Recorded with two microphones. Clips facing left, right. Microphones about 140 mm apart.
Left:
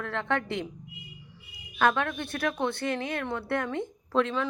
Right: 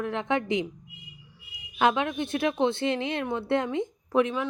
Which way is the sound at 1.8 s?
15° right (ahead or behind).